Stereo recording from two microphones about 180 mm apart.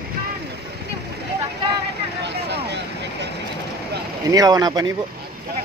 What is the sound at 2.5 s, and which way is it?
Vehicle, 70° right (ahead or behind).